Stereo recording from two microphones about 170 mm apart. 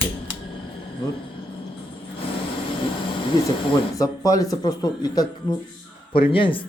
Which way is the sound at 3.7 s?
20° left (ahead or behind).